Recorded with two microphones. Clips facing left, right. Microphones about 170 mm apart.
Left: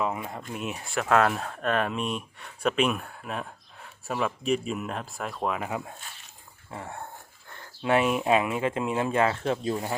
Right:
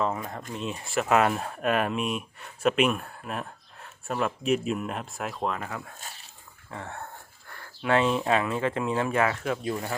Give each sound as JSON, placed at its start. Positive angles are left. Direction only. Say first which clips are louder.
{"t": 0.0, "sound": "speech", "louder": "right 1 dB", "side_deg": 10}
{"t": 0.9, "sound": "speech", "louder": "even", "side_deg": -5}